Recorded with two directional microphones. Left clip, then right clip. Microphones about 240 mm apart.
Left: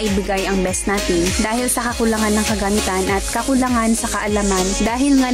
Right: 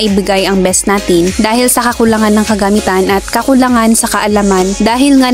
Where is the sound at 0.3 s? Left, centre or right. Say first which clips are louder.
Right 10 dB; right.